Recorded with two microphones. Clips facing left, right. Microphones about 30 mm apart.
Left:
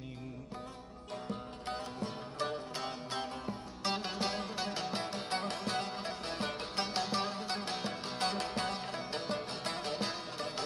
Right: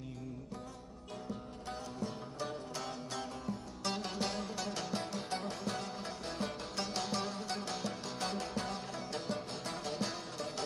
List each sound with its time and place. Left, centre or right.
1.3 s music: left
5.4 s music: left